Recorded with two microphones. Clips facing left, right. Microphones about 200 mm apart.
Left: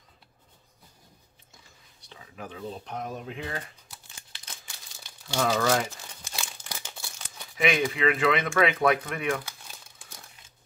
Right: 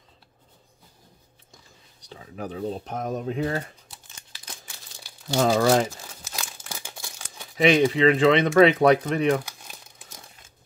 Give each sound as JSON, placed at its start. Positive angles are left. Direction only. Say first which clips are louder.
{"t": 2.0, "sound": "speech", "louder": "right 7 dB", "side_deg": -40}
{"t": 5.3, "sound": "speech", "louder": "right 5 dB", "side_deg": -35}
{"t": 6.3, "sound": "crumpling", "louder": "right 1 dB", "side_deg": -5}
{"t": 7.5, "sound": "speech", "louder": "right 7 dB", "side_deg": -35}